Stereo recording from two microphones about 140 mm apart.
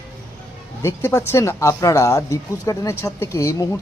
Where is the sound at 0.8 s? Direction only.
20° left (ahead or behind).